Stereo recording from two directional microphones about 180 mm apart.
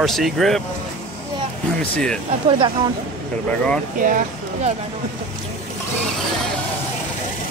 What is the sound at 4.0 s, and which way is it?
Speech, 50° right (ahead or behind).